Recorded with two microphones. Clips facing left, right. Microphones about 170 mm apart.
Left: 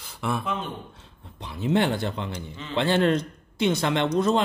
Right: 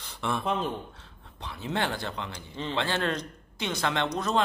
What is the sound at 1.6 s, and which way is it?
Speech, 20° left (ahead or behind).